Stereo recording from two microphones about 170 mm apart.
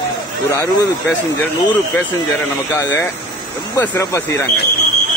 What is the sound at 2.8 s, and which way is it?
Speech, 15° left (ahead or behind).